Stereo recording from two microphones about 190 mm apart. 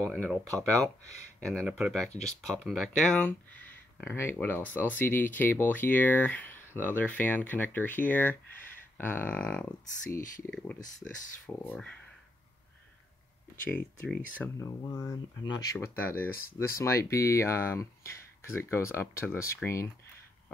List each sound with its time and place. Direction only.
0.1 s speech: centre (ahead or behind)
2.0 s speech: 35° left (ahead or behind)
2.4 s speech: centre (ahead or behind)
13.7 s speech: 10° left (ahead or behind)